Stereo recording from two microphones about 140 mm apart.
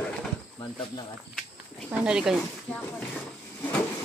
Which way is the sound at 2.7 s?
10° left (ahead or behind).